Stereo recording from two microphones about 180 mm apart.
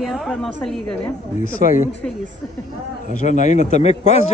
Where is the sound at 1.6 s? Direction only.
45° left (ahead or behind).